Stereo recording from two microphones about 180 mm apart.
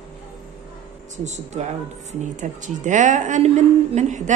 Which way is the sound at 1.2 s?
40° right (ahead or behind).